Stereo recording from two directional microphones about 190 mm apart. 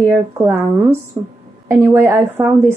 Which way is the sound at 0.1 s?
10° right (ahead or behind).